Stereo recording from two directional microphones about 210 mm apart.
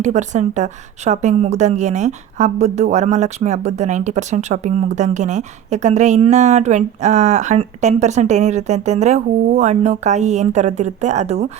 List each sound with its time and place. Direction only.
0.0 s a woman's voice: 35° right (ahead or behind)